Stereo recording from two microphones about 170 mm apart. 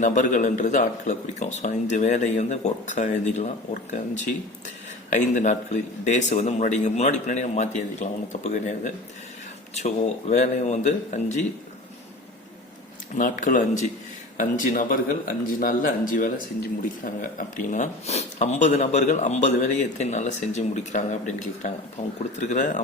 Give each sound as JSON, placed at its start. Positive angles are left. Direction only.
{"t": 0.0, "sound": "speech", "side_deg": 50}
{"t": 5.1, "sound": "speech", "side_deg": 45}
{"t": 13.1, "sound": "speech", "side_deg": 50}